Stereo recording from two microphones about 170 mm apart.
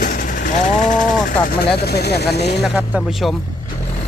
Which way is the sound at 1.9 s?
75° left (ahead or behind).